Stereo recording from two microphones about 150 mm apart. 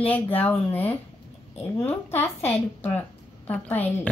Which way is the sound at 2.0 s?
15° left (ahead or behind).